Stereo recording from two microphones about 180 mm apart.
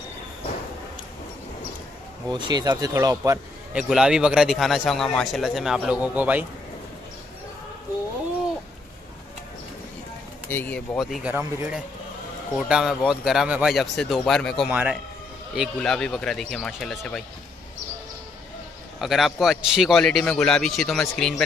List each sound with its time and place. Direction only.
2.3 s speech: 25° right (ahead or behind)
3.7 s a man's voice: 5° right (ahead or behind)
10.5 s speech: 10° left (ahead or behind)
11.0 s a man's voice: centre (ahead or behind)
18.9 s a man's voice: centre (ahead or behind)